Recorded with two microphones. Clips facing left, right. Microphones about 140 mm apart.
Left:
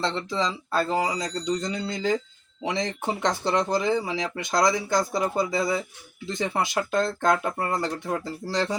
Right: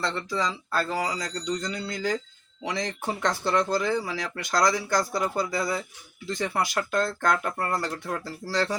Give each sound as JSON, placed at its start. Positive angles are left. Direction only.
{"t": 0.0, "sound": "speech", "side_deg": 25}